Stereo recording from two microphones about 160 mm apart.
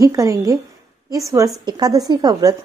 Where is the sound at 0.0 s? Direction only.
20° right (ahead or behind).